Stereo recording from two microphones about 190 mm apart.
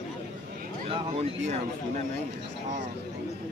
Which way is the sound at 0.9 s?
30° right (ahead or behind).